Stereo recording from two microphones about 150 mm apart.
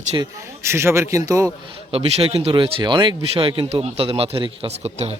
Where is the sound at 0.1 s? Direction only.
25° right (ahead or behind).